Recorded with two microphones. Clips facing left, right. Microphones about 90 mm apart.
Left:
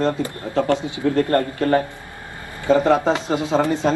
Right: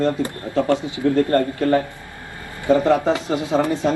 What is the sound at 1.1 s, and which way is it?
Speech, 60° left (ahead or behind).